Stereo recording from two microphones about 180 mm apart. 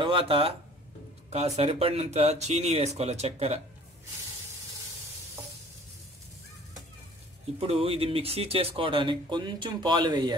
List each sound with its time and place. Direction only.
0.0 s speech: 30° right (ahead or behind)
1.6 s speech: 35° right (ahead or behind)
7.6 s speech: 35° right (ahead or behind)